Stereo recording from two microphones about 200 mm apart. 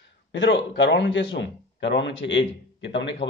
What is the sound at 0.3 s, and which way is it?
A man's voice, 65° left (ahead or behind).